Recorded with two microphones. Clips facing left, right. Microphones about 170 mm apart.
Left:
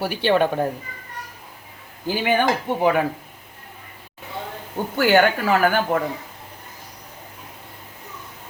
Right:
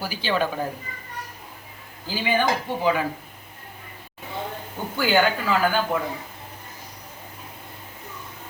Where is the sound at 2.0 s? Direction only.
65° left (ahead or behind).